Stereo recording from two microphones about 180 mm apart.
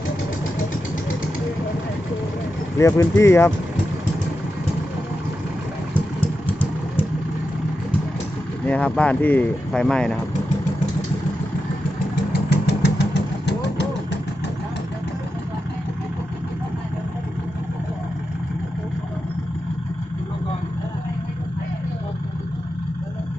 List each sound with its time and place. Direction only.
2.7 s speech: 15° left (ahead or behind)
5.9 s vehicle: 10° left (ahead or behind)
8.6 s speech: 5° left (ahead or behind)
12.5 s vehicle: 70° left (ahead or behind)